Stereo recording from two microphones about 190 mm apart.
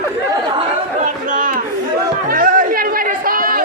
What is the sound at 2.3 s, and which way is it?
Music, 45° right (ahead or behind).